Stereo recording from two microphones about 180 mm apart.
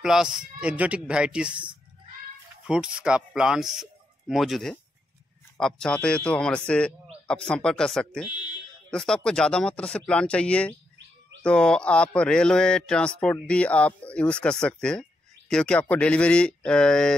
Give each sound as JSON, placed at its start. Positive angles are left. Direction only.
{"t": 0.0, "sound": "speech", "side_deg": -5}